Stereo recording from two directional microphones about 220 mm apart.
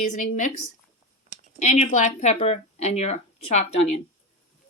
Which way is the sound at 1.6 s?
30° left (ahead or behind).